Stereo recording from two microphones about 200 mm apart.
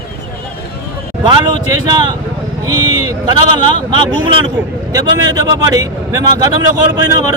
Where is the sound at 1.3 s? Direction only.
25° right (ahead or behind).